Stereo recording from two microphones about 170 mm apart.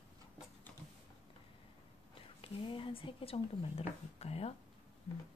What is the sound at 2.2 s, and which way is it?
Speech, 30° left (ahead or behind).